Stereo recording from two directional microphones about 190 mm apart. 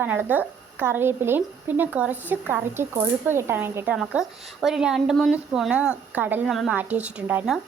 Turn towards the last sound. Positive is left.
turn(degrees=-5)  # may be behind; listen again after turning